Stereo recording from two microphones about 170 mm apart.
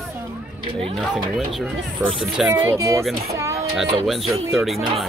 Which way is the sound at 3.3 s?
15° right (ahead or behind).